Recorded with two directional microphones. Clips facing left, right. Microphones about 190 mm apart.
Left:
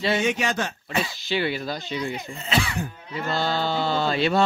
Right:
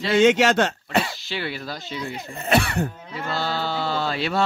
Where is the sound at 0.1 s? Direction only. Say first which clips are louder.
Right 10 dB; 85° right; by 1.1 s 70° right (ahead or behind).